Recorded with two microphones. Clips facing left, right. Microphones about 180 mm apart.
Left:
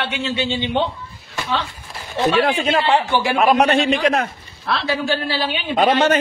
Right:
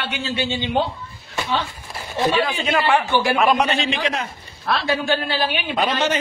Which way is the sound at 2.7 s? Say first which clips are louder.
Left 2 dB; 25° left (ahead or behind).